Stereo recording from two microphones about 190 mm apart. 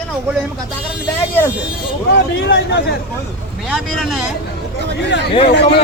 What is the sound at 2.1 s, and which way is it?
Speech, 65° left (ahead or behind).